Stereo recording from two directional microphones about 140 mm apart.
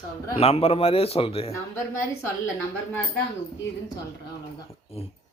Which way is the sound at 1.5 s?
20° left (ahead or behind).